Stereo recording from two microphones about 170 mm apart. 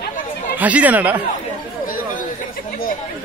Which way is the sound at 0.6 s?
10° right (ahead or behind).